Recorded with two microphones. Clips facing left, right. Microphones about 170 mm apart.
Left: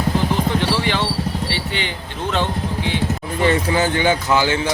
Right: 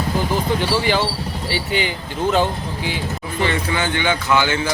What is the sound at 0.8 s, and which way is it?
Vehicle, 5° right (ahead or behind).